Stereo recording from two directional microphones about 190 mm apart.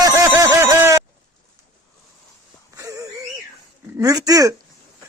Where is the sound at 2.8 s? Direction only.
15° right (ahead or behind).